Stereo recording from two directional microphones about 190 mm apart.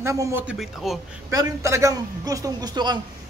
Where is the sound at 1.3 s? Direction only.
15° right (ahead or behind).